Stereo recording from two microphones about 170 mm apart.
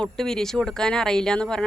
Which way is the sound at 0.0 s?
5° left (ahead or behind).